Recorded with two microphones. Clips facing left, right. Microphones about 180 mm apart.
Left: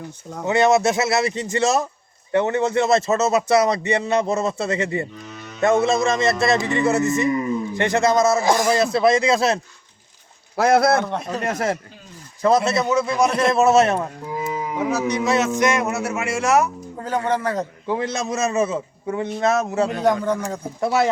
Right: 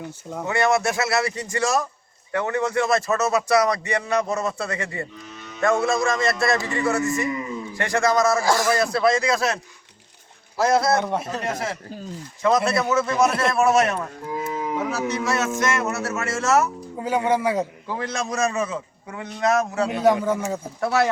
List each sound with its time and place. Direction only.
0.4 s speech: 20° left (ahead or behind)
10.6 s a man's voice: 60° left (ahead or behind)
11.0 s speech: 5° right (ahead or behind)
11.4 s speech: 45° left (ahead or behind)
12.4 s speech: 35° left (ahead or behind)
12.9 s speech: 15° left (ahead or behind)
14.8 s speech: 15° left (ahead or behind)
17.0 s speech: 10° right (ahead or behind)
17.8 s speech: 20° left (ahead or behind)
20.2 s speech: 5° right (ahead or behind)
20.8 s speech: 20° left (ahead or behind)